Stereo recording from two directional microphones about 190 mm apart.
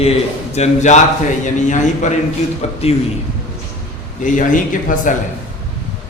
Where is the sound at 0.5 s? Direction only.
35° left (ahead or behind).